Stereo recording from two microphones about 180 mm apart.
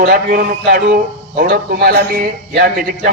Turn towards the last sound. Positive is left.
turn(degrees=-55)  # may be behind; listen again after turning